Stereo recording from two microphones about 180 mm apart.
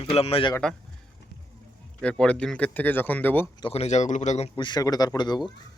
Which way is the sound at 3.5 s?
30° left (ahead or behind).